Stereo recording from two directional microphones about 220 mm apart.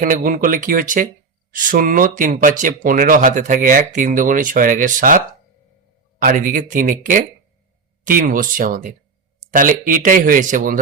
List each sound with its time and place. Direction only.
0.0 s speech: 40° right (ahead or behind)